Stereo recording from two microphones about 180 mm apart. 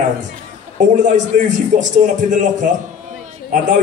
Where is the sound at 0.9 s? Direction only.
45° right (ahead or behind).